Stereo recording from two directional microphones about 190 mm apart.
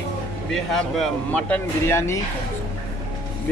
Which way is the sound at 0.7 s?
5° left (ahead or behind).